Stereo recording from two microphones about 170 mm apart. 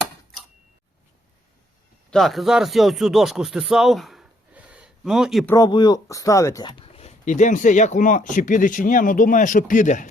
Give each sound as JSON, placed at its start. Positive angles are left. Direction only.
{"t": 2.0, "sound": "speech", "side_deg": 0}
{"t": 5.5, "sound": "speech", "side_deg": 25}